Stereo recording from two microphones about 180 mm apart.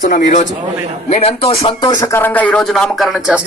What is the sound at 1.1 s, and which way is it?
A man's voice, 35° left (ahead or behind).